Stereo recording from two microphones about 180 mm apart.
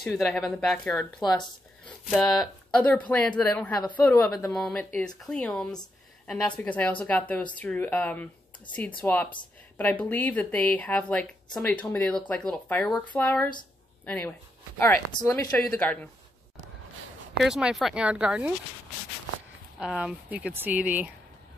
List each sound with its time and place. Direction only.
0.0 s speech: centre (ahead or behind)
15.1 s speech: 20° left (ahead or behind)
17.4 s speech: 5° right (ahead or behind)
20.0 s speech: 5° right (ahead or behind)